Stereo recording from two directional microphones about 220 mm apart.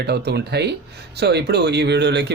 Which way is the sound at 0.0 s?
50° right (ahead or behind).